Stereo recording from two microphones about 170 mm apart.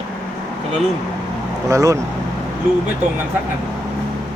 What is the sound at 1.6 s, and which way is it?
Speech, 20° right (ahead or behind).